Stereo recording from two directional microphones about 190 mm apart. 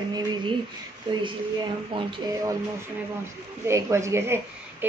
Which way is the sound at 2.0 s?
25° right (ahead or behind).